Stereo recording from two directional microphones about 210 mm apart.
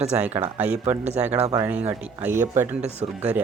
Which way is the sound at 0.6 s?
10° right (ahead or behind).